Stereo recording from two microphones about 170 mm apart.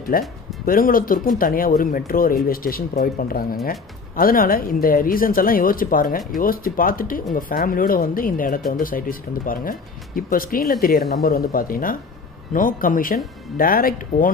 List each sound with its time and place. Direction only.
0.1 s speech: 55° left (ahead or behind)